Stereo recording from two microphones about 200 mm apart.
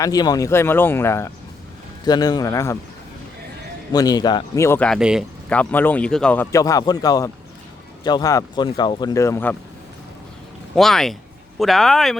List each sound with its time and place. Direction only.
0.0 s speech: 20° left (ahead or behind)
3.9 s speech: 20° left (ahead or behind); by 5.2 s 5° right (ahead or behind)
5.5 s speech: 10° left (ahead or behind)
10.8 s speech: centre (ahead or behind)